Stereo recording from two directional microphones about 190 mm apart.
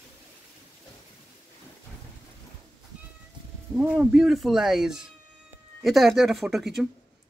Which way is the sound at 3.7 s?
5° right (ahead or behind).